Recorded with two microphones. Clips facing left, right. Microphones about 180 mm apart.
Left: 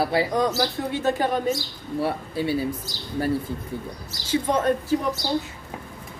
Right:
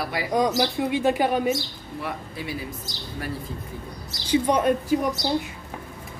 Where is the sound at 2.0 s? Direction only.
30° left (ahead or behind).